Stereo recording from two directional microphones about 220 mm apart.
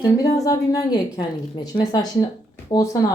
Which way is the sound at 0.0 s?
15° left (ahead or behind).